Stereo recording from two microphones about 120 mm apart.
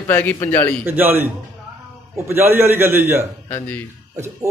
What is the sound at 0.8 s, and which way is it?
Speech, 20° right (ahead or behind).